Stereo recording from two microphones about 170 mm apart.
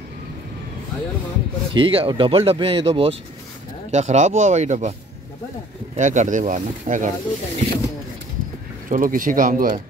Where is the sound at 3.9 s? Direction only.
45° right (ahead or behind).